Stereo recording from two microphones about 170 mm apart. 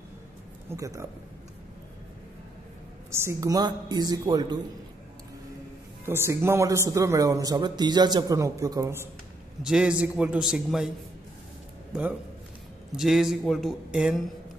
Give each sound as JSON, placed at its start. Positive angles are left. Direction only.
{"t": 0.7, "sound": "speech", "side_deg": -20}
{"t": 3.1, "sound": "speech", "side_deg": -15}
{"t": 6.0, "sound": "speech", "side_deg": -15}
{"t": 9.6, "sound": "a man's voice", "side_deg": -5}
{"t": 11.9, "sound": "a man's voice", "side_deg": -10}